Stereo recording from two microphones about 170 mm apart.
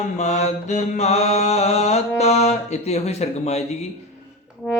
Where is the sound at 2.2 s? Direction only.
40° left (ahead or behind).